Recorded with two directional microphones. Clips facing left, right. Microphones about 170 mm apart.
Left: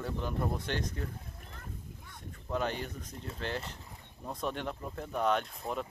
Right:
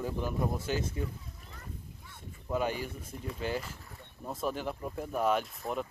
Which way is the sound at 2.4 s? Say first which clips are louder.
Right 2 dB; 10° right (ahead or behind).